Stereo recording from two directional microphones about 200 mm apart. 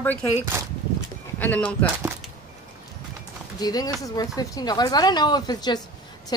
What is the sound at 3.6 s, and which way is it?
Speech, 20° left (ahead or behind).